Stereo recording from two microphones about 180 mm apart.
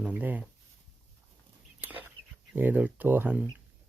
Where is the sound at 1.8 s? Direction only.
10° right (ahead or behind).